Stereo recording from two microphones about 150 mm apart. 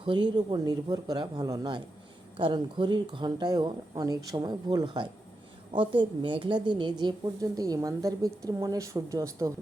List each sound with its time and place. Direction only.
0.0 s a woman's voice: 30° right (ahead or behind)